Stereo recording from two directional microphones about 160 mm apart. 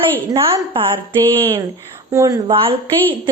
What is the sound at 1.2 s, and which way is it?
Speech, 10° left (ahead or behind).